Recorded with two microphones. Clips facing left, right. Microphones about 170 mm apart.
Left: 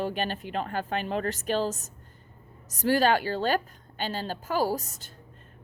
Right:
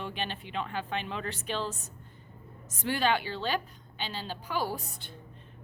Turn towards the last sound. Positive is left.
turn(degrees=40)  # may be behind; listen again after turning